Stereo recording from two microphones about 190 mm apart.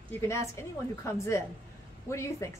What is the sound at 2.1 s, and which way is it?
Speech, 15° left (ahead or behind).